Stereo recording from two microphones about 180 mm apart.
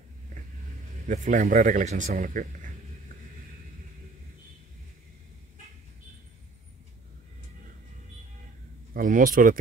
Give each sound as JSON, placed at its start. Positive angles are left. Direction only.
{"t": 1.0, "sound": "speech", "side_deg": -45}
{"t": 8.9, "sound": "speech", "side_deg": -50}